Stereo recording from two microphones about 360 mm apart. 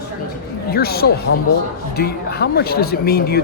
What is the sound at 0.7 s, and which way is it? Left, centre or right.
Speech, left.